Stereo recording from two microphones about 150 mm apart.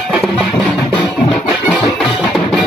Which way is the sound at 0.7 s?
10° left (ahead or behind).